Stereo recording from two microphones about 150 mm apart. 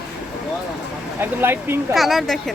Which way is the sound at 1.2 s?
15° right (ahead or behind).